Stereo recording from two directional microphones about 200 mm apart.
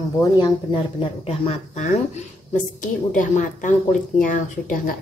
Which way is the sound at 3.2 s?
40° left (ahead or behind).